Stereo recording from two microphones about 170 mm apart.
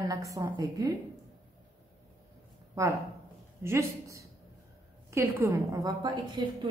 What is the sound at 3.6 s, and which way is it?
A woman's voice, 15° right (ahead or behind).